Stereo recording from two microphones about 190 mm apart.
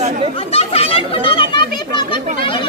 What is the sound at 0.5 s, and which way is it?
A child's voice, 30° left (ahead or behind).